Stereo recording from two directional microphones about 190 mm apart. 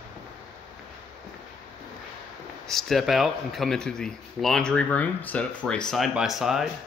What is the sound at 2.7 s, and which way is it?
Speech, centre (ahead or behind).